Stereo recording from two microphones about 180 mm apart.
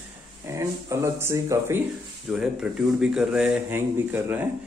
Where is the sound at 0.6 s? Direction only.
15° right (ahead or behind).